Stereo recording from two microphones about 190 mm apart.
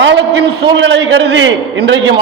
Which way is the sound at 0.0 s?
65° right (ahead or behind).